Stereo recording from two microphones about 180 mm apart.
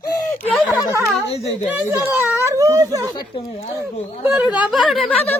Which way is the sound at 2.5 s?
20° right (ahead or behind).